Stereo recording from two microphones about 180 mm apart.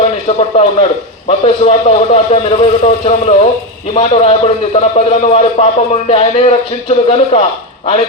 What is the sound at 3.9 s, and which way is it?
A man's voice, 35° left (ahead or behind).